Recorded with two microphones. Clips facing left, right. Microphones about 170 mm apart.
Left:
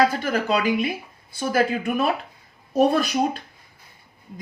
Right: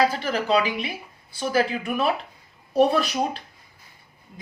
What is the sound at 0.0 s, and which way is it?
A woman's voice, 50° left (ahead or behind).